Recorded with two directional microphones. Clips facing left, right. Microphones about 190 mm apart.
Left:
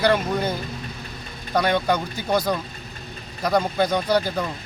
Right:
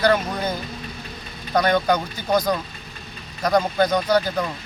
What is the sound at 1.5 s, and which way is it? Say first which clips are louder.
Speech: right 2 dB; 5° left (ahead or behind).